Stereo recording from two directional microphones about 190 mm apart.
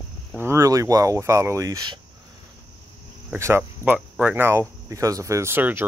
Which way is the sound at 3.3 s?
10° right (ahead or behind).